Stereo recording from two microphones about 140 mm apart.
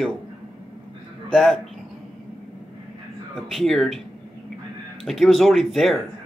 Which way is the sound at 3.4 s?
Centre (ahead or behind).